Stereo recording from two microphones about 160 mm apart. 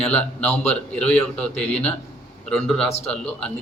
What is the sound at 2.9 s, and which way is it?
Speech, 40° left (ahead or behind).